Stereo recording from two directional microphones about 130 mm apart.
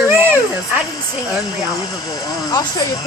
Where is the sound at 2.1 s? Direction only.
30° left (ahead or behind).